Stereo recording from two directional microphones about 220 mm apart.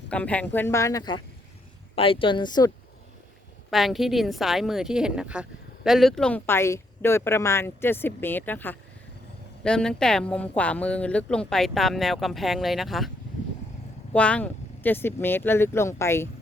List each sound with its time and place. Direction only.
0.1 s a woman's voice: 5° left (ahead or behind)
3.7 s a woman's voice: centre (ahead or behind)
14.1 s speech: 5° left (ahead or behind)